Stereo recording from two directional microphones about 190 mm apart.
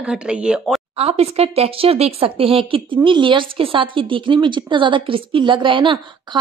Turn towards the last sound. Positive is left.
turn(degrees=-25)  # may be behind; listen again after turning